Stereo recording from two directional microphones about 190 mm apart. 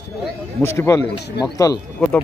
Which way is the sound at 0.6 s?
15° left (ahead or behind).